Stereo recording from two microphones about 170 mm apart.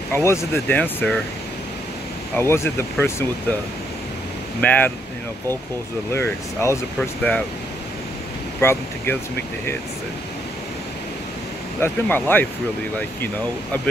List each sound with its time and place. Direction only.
0.1 s speech: 15° left (ahead or behind)
2.3 s speech: 15° left (ahead or behind)
4.6 s speech: 10° left (ahead or behind)
6.1 s speech: 15° left (ahead or behind)
7.0 s speech: 5° left (ahead or behind)
8.5 s speech: 15° left (ahead or behind)
11.8 s speech: 10° left (ahead or behind)